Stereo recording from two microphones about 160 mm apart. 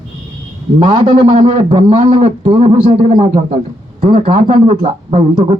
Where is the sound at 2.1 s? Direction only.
35° right (ahead or behind).